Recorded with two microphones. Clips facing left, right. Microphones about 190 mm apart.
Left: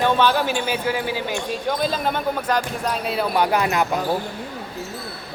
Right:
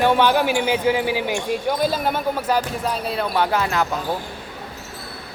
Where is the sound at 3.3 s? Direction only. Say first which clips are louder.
Left 1 dB; 15° left (ahead or behind).